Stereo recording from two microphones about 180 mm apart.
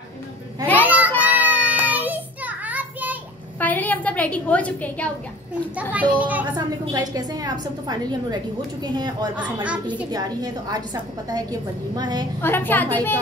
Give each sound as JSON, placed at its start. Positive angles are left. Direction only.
{"t": 0.7, "sound": "child singing", "side_deg": -10}
{"t": 3.5, "sound": "a sound", "side_deg": 10}
{"t": 5.9, "sound": "a child's voice", "side_deg": -10}
{"t": 6.5, "sound": "a woman's voice", "side_deg": -20}
{"t": 12.4, "sound": "a woman's voice", "side_deg": 10}